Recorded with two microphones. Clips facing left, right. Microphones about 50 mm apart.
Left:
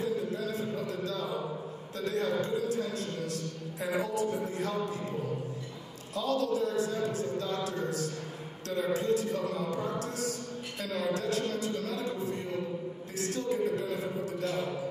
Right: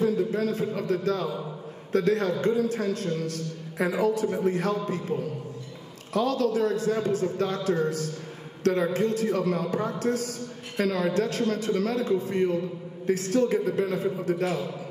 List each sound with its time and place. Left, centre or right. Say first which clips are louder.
0.0 s a sound: right 7 dB; right
1.9 s a man's voice: right 8 dB; right
6.1 s a man's voice: right 5 dB; right
11.1 s a man's voice: right 5 dB; right